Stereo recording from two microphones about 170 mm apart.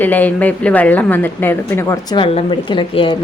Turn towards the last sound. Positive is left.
turn(degrees=30)  # may be behind; listen again after turning